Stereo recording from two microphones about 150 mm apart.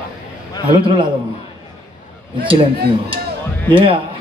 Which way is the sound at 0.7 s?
35° right (ahead or behind).